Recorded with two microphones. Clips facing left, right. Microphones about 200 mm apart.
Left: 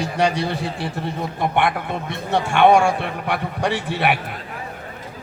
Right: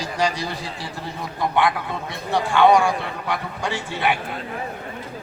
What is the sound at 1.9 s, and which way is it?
A man's voice, 25° left (ahead or behind).